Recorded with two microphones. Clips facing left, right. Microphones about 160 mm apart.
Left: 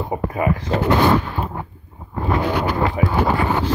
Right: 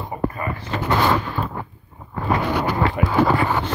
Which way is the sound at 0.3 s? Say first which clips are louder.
Left 7 dB; 90° left.